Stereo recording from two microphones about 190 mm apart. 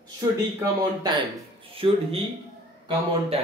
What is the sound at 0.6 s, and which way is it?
A man's voice, 20° right (ahead or behind).